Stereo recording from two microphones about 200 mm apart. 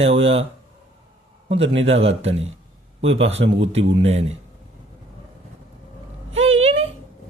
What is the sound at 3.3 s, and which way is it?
Speech, 70° right (ahead or behind).